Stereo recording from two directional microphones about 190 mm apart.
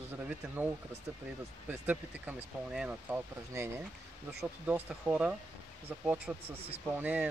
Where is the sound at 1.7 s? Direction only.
10° right (ahead or behind).